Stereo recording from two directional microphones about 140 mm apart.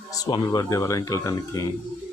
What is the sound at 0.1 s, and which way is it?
Speech, 25° left (ahead or behind).